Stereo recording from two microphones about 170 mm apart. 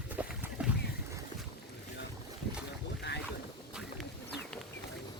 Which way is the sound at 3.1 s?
80° left.